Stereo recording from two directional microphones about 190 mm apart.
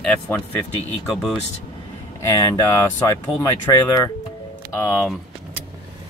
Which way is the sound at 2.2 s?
20° left (ahead or behind).